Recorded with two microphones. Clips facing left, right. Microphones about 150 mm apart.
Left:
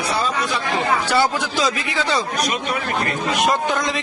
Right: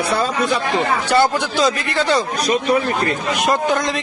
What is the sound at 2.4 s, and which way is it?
Speech, 35° right (ahead or behind).